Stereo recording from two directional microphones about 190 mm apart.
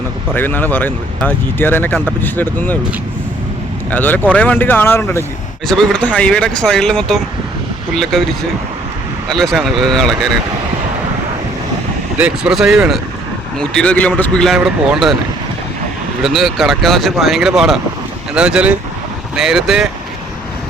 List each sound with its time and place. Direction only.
0.3 s speech: 10° left (ahead or behind)
3.9 s speech: 10° left (ahead or behind)
12.1 s speech: 5° right (ahead or behind)
16.2 s speech: centre (ahead or behind)